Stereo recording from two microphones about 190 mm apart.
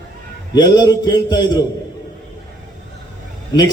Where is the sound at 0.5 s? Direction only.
20° left (ahead or behind).